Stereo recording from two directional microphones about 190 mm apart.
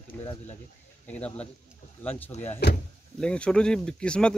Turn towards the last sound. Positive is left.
turn(degrees=5)  # may be behind; listen again after turning